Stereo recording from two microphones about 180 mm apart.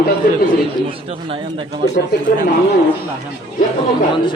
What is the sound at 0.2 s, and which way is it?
Speech, 55° left (ahead or behind).